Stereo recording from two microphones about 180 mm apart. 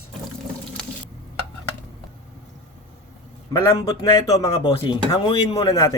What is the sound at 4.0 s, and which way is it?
Speech, 20° left (ahead or behind).